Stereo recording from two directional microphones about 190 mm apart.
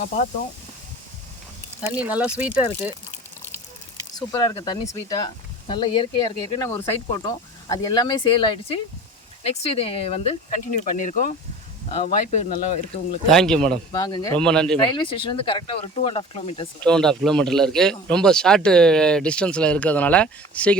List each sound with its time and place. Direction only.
1.9 s speech: 10° right (ahead or behind)
4.1 s speech: 20° left (ahead or behind)
10.8 s speech: 45° left (ahead or behind)
13.2 s speech: centre (ahead or behind)
13.9 s speech: 20° left (ahead or behind)
14.3 s speech: 5° left (ahead or behind)
14.8 s speech: 25° left (ahead or behind)
16.8 s speech: 5° left (ahead or behind)